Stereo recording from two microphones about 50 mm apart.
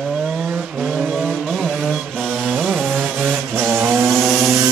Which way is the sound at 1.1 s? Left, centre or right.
Centre.